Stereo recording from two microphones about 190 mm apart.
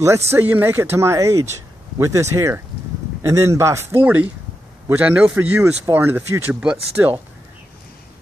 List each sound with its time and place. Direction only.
0.3 s speech: 10° right (ahead or behind)